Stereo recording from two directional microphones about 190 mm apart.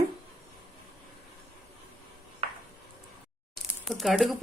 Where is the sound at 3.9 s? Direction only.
Centre (ahead or behind).